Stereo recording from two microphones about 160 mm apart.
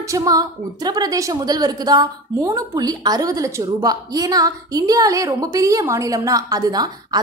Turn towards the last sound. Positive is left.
turn(degrees=-25)  # may be behind; listen again after turning